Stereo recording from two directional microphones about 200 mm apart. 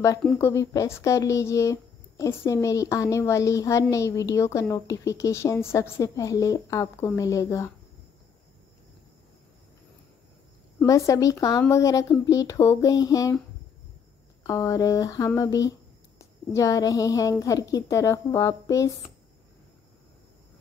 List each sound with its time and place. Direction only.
0.2 s speech: 10° left (ahead or behind)
10.8 s speech: 15° left (ahead or behind)
14.4 s speech: 15° left (ahead or behind)